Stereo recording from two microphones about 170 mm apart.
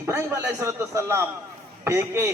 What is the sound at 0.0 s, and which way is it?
A man's voice, 15° right (ahead or behind).